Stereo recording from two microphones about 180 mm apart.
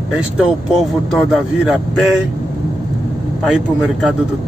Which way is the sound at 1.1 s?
Centre (ahead or behind).